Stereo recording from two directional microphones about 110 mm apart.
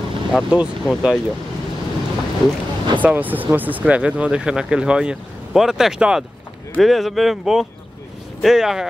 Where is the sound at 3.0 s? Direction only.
15° right (ahead or behind).